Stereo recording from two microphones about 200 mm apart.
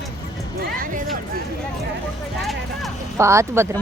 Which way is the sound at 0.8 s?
40° right (ahead or behind).